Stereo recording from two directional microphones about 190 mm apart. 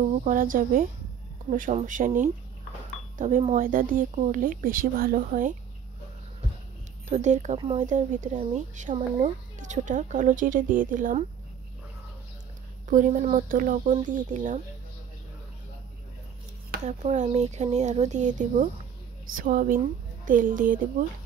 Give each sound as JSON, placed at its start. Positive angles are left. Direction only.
{"t": 0.1, "sound": "a woman's voice", "side_deg": -45}
{"t": 7.1, "sound": "speech", "side_deg": -40}
{"t": 7.5, "sound": "speech", "side_deg": -25}
{"t": 7.8, "sound": "speech", "side_deg": -40}
{"t": 12.8, "sound": "a woman's voice", "side_deg": -45}
{"t": 16.8, "sound": "a woman's voice", "side_deg": -40}